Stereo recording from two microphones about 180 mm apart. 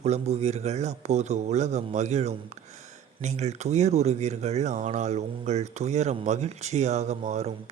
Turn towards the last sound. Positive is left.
turn(degrees=-40)  # may be behind; listen again after turning